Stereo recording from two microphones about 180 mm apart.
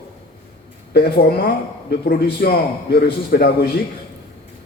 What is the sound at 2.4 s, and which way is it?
A man's voice, 60° left (ahead or behind).